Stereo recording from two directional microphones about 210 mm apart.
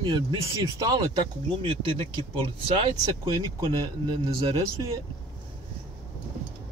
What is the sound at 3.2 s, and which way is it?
Speech, 15° right (ahead or behind).